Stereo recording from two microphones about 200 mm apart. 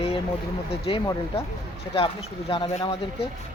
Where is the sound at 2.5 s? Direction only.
25° left (ahead or behind).